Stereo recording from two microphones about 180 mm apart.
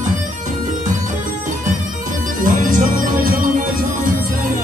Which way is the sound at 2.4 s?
50° right (ahead or behind).